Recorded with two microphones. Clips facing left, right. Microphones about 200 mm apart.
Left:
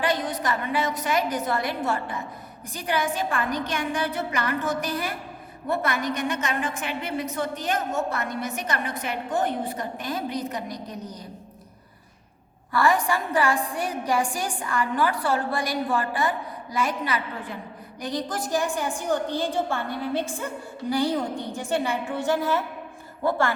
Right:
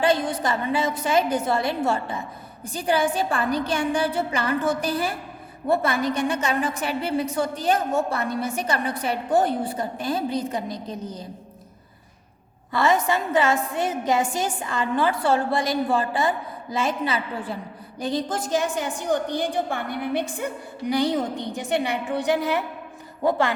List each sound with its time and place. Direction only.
0.0 s a woman's voice: 30° right (ahead or behind)
12.7 s a woman's voice: 20° right (ahead or behind)